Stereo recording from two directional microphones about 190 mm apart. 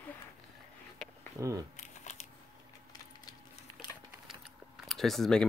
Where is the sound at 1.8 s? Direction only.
40° left (ahead or behind).